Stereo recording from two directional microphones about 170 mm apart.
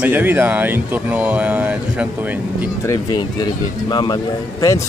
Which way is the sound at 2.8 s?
25° left (ahead or behind).